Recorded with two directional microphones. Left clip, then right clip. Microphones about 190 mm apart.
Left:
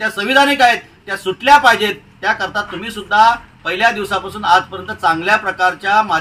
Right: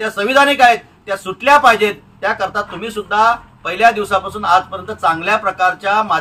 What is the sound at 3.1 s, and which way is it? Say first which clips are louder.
A man's voice: left 2 dB; centre (ahead or behind).